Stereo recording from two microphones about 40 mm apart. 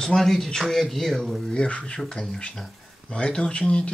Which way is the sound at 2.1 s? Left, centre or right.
Centre.